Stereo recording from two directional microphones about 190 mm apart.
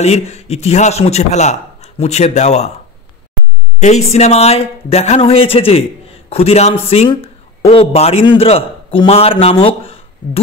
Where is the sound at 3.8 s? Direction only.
35° left (ahead or behind).